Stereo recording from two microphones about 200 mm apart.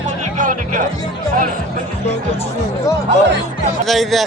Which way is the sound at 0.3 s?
40° right (ahead or behind).